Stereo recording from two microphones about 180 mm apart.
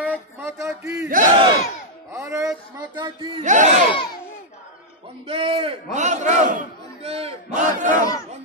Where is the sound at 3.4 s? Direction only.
40° right (ahead or behind).